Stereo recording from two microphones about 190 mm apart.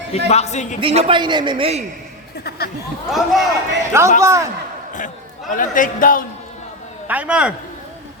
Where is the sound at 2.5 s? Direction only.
55° left (ahead or behind).